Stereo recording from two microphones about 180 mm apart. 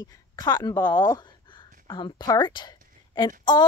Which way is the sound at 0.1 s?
20° left (ahead or behind).